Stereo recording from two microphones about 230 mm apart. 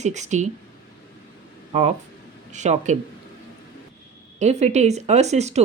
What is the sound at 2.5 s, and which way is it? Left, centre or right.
Speech, right.